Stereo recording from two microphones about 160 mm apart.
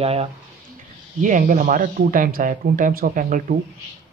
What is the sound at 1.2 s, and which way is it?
Speech, 55° right (ahead or behind).